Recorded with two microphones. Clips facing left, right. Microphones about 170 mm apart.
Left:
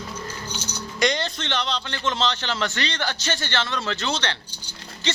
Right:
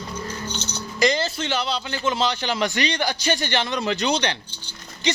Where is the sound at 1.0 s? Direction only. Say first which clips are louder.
Right 3 dB; centre (ahead or behind).